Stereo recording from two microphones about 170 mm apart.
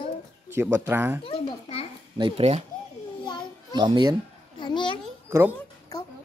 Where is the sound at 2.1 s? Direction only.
30° right (ahead or behind).